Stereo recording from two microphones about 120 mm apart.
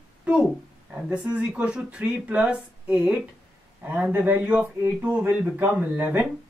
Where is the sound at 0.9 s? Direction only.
10° right (ahead or behind).